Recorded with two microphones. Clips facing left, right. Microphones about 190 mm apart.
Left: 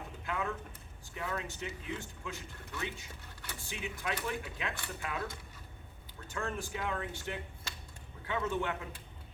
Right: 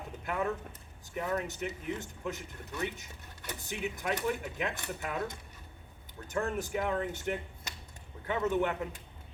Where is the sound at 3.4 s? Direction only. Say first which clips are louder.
Right 6 dB; 20° right (ahead or behind).